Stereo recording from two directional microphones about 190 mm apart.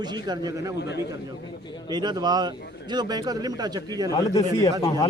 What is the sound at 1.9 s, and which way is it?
A man's voice, 20° right (ahead or behind).